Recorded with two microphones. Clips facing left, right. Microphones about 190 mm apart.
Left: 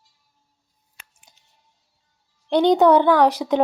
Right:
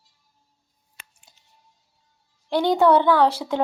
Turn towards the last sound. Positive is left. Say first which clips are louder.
# left 2 dB
turn(degrees=15)  # may be behind; listen again after turning